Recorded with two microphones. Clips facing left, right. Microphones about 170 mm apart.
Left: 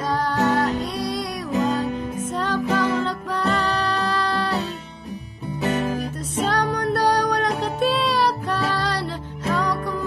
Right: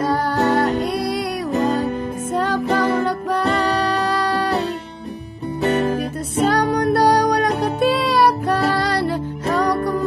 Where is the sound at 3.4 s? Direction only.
15° right (ahead or behind).